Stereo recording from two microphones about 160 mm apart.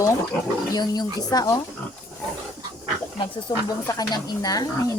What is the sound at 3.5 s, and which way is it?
Speech, 25° left (ahead or behind).